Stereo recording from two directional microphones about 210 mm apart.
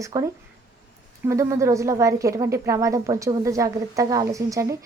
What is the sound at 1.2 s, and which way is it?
Speech, 15° right (ahead or behind).